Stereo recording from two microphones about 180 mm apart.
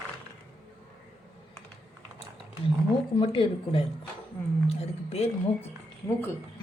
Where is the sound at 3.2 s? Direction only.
30° left (ahead or behind).